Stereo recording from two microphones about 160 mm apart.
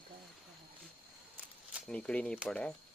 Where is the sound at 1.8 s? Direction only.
5° left (ahead or behind).